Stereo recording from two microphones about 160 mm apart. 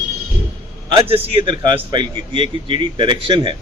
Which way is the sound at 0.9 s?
35° right (ahead or behind).